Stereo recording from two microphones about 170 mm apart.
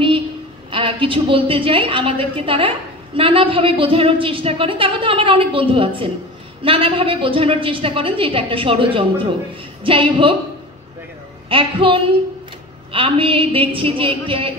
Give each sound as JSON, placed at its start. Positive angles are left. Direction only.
{"t": 0.7, "sound": "a woman's voice", "side_deg": -30}
{"t": 11.4, "sound": "a woman's voice", "side_deg": -30}